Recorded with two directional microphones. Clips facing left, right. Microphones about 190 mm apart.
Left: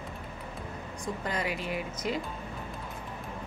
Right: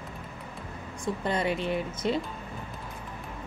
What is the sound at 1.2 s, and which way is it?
Speech, 30° right (ahead or behind).